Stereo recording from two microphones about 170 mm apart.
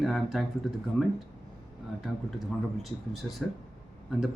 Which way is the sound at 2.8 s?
Centre (ahead or behind).